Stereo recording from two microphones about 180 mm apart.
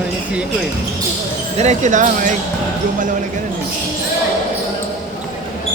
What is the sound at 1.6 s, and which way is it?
Speech, 40° right (ahead or behind).